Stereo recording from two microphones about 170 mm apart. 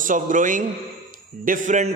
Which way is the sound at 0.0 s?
50° right (ahead or behind).